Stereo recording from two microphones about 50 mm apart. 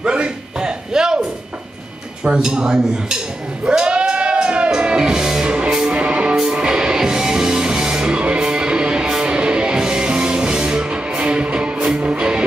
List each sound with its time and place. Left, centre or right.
0.0 s music: centre
2.2 s speech: centre
3.6 s music: centre
5.9 s music: right